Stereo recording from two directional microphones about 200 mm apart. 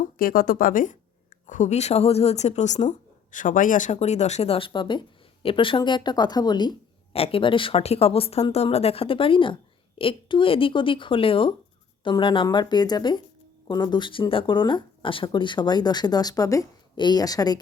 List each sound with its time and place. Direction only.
0.2 s a woman's voice: 45° left (ahead or behind); by 17.6 s 20° left (ahead or behind)